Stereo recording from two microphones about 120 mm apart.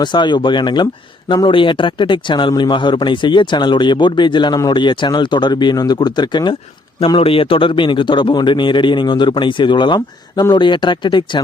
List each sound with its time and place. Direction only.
0.0 s a man's voice: 40° left (ahead or behind)
7.2 s a man's voice: 50° left (ahead or behind)